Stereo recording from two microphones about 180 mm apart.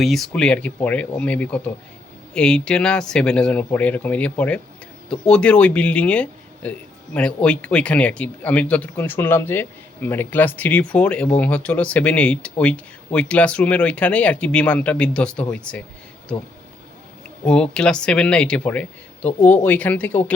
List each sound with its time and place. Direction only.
0.0 s speech: centre (ahead or behind)
17.4 s speech: 5° left (ahead or behind)